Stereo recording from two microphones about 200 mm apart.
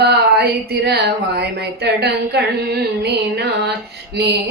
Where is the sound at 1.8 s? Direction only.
55° right (ahead or behind).